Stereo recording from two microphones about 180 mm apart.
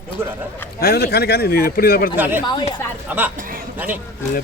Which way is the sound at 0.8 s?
60° left (ahead or behind).